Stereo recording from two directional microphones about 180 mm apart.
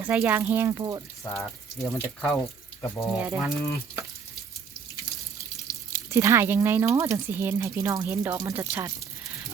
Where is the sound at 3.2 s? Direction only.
5° right (ahead or behind).